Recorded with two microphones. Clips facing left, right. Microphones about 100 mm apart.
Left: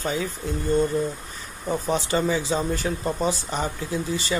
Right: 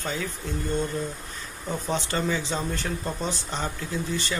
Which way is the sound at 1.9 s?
10° left (ahead or behind).